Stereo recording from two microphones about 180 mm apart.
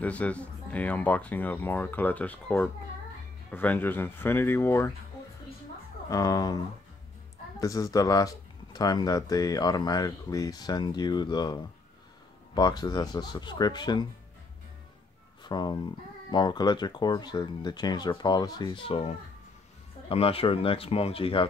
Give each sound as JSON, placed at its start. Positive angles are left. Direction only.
{"t": 0.0, "sound": "speech", "side_deg": 5}
{"t": 6.0, "sound": "speech", "side_deg": 20}
{"t": 15.4, "sound": "speech", "side_deg": 25}